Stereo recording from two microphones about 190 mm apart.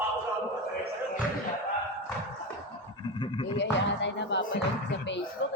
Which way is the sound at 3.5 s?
65° left (ahead or behind).